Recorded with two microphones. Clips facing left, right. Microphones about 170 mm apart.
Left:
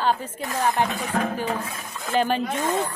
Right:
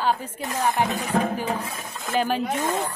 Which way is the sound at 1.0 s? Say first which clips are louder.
Right 1 dB; 15° right (ahead or behind).